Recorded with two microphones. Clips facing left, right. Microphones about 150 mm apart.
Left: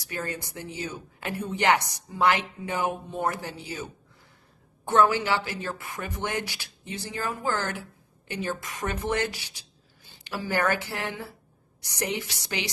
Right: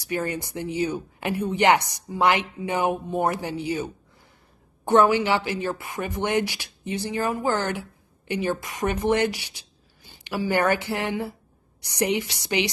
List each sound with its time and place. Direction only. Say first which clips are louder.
0.1 s a woman's voice: right 6 dB; 15° right (ahead or behind)